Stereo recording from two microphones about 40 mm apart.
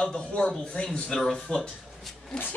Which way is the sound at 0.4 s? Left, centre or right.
Left.